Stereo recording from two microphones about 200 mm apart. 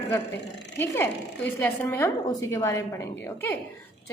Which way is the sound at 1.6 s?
10° left (ahead or behind).